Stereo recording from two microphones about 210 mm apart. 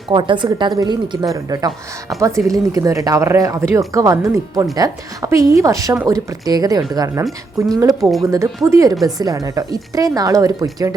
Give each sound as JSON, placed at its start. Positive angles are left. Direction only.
{"t": 0.1, "sound": "a woman's voice", "side_deg": -20}